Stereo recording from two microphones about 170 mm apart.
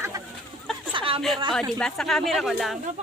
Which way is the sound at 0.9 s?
30° right (ahead or behind).